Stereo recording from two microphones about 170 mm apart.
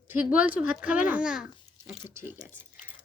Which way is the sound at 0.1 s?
10° right (ahead or behind).